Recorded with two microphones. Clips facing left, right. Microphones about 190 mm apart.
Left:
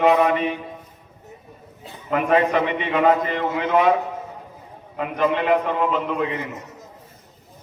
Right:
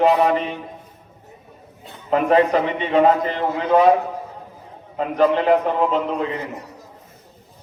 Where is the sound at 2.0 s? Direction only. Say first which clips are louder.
Right 3 dB; 35° right (ahead or behind).